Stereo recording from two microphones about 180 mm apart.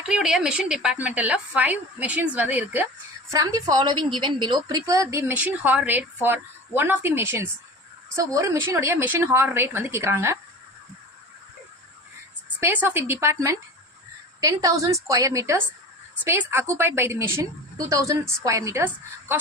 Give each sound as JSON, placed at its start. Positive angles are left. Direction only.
{"t": 0.1, "sound": "speech", "side_deg": -5}
{"t": 3.3, "sound": "speech", "side_deg": -20}
{"t": 12.5, "sound": "speech", "side_deg": -10}